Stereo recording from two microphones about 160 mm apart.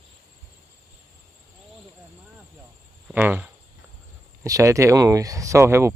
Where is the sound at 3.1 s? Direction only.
10° right (ahead or behind).